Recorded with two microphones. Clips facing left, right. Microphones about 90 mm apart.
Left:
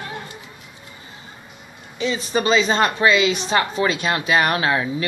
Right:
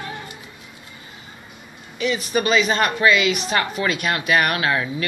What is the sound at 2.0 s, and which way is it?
A woman's voice, 30° left (ahead or behind).